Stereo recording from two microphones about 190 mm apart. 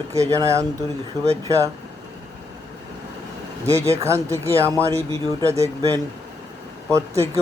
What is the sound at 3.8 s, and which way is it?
Speech, 15° right (ahead or behind).